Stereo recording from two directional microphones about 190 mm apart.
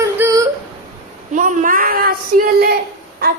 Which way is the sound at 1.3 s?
45° right (ahead or behind).